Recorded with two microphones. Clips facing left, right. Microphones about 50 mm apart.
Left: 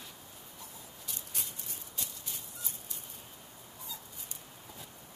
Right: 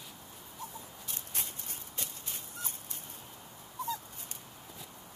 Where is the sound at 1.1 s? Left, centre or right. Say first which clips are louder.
Right 2 dB; right.